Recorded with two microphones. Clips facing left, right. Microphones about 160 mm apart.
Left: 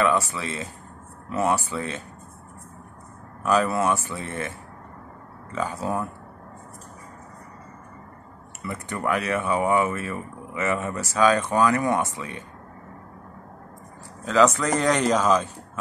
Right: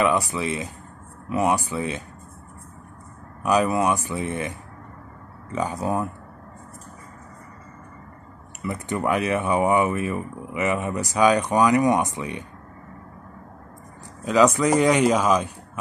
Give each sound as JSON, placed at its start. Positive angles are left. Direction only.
{"t": 0.0, "sound": "speech", "side_deg": -15}
{"t": 3.4, "sound": "speech", "side_deg": -15}
{"t": 8.6, "sound": "speech", "side_deg": -20}
{"t": 14.2, "sound": "speech", "side_deg": -15}